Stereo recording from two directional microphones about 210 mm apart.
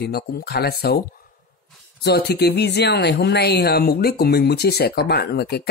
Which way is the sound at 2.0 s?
50° left (ahead or behind).